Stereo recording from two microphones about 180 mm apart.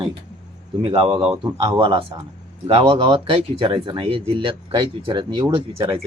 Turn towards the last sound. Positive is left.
turn(degrees=-25)  # may be behind; listen again after turning